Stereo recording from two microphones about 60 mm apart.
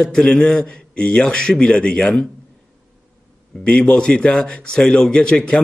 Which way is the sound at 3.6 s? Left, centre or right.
Centre.